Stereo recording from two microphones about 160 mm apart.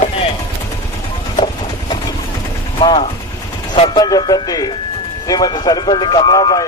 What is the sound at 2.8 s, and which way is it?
Speech, 30° left (ahead or behind).